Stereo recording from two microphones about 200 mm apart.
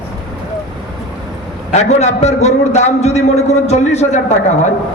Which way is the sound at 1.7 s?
35° left (ahead or behind).